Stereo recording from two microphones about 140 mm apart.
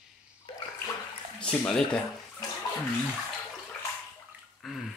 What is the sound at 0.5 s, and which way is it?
Bathtub, 35° left (ahead or behind).